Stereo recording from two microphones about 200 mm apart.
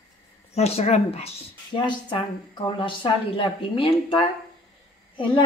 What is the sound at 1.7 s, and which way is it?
A woman's voice, 25° left (ahead or behind).